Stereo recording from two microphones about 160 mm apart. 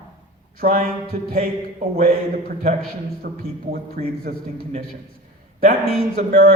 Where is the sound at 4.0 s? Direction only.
55° right (ahead or behind).